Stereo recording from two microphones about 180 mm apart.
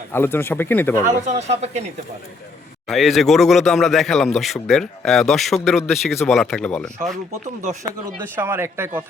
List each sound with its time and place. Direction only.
0.1 s speech: 15° left (ahead or behind)
1.3 s speech: 40° right (ahead or behind)
2.9 s speech: centre (ahead or behind)
8.2 s speech: 10° right (ahead or behind)